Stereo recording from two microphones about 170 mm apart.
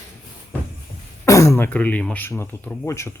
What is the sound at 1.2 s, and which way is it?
Speech, 20° left (ahead or behind).